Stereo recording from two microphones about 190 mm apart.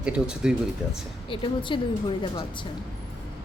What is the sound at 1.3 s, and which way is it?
Speech, 25° left (ahead or behind).